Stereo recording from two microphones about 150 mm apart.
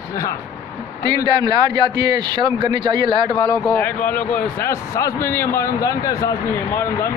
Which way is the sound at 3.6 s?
15° left (ahead or behind).